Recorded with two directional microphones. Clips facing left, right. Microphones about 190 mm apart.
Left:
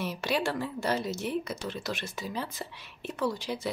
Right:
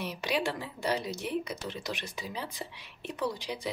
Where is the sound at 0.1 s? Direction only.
15° right (ahead or behind).